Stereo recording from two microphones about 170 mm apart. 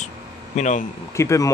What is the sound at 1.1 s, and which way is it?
Speech, 15° left (ahead or behind).